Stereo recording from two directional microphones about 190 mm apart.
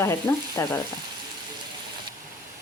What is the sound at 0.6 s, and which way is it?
Speech, 10° left (ahead or behind).